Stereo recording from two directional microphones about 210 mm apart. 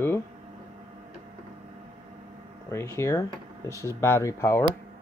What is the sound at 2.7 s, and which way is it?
Speech, 15° left (ahead or behind).